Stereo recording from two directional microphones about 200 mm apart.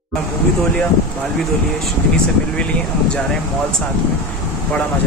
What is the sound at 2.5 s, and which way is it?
Speech, 5° left (ahead or behind).